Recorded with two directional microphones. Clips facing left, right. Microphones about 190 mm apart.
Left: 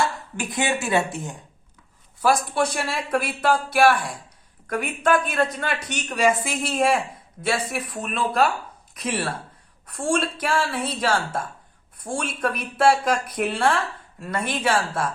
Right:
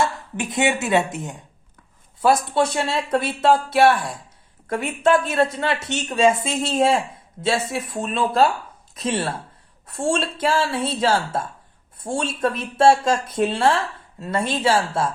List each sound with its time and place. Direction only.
0.0 s speech: 20° right (ahead or behind)